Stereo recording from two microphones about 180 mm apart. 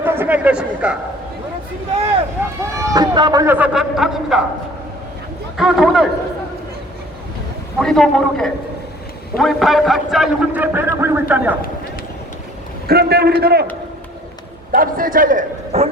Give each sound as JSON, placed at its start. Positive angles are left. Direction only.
{"t": 0.0, "sound": "a man's voice", "side_deg": -10}
{"t": 2.7, "sound": "a man's voice", "side_deg": -20}
{"t": 5.5, "sound": "a man's voice", "side_deg": 0}
{"t": 7.8, "sound": "a man's voice", "side_deg": 0}
{"t": 12.9, "sound": "a man's voice", "side_deg": -60}
{"t": 14.7, "sound": "a man's voice", "side_deg": -50}